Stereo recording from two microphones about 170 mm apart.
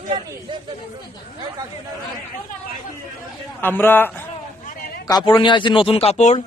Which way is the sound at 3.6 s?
10° left (ahead or behind).